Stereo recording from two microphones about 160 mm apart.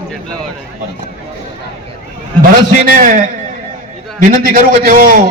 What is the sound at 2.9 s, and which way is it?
A man's voice, 55° right (ahead or behind).